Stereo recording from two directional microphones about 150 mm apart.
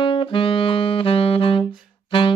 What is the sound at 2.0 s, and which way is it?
Music, 35° left (ahead or behind).